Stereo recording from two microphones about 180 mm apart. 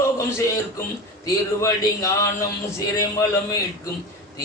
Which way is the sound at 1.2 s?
20° left (ahead or behind).